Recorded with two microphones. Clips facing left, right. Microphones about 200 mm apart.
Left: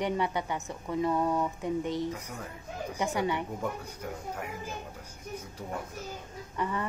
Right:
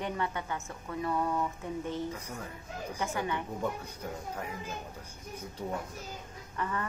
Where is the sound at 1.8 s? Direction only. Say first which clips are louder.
Left 3 dB; 75° left (ahead or behind).